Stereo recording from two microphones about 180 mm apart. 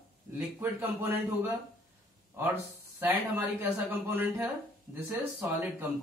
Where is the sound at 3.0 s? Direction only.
10° right (ahead or behind).